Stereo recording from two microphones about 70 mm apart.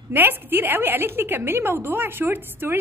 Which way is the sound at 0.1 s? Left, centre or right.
Right.